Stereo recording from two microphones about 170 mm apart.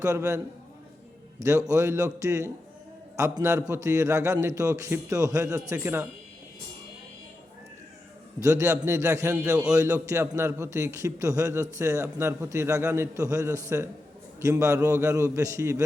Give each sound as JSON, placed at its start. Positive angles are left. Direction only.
{"t": 0.0, "sound": "a man's voice", "side_deg": -20}
{"t": 8.4, "sound": "a man's voice", "side_deg": -15}